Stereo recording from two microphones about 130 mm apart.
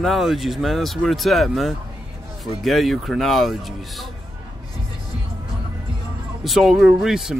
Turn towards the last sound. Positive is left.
turn(degrees=-5)  # may be behind; listen again after turning